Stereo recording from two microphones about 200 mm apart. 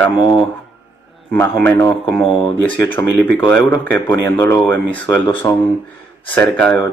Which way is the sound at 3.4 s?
15° left (ahead or behind).